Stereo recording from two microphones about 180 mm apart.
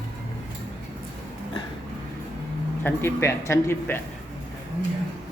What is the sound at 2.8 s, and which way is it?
Speech, 10° left (ahead or behind).